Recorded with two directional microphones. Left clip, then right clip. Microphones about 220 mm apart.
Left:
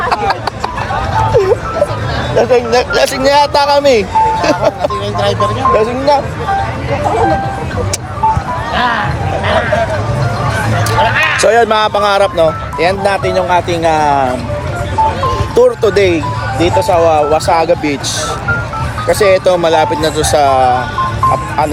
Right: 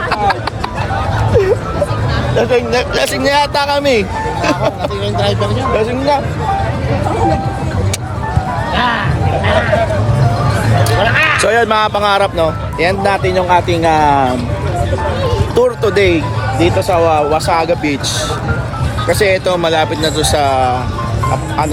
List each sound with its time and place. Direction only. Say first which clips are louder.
2.3 s speech: left 3 dB; centre (ahead or behind)
8.7 s speech: left 2 dB; 15° right (ahead or behind)
11.0 s speech: left 1 dB; 35° right (ahead or behind)
11.3 s speech: left 2 dB; 5° right (ahead or behind)
15.5 s speech: left 3 dB; 5° right (ahead or behind)
19.0 s speech: left 3 dB; centre (ahead or behind)